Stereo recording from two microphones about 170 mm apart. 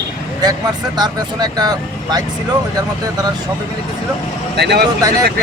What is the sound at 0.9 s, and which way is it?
Speech, 25° right (ahead or behind).